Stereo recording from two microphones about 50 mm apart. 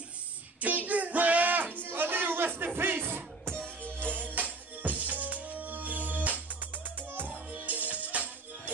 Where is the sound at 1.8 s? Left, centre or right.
Right.